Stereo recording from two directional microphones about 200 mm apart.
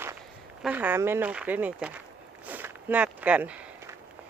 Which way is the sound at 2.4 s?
10° right (ahead or behind).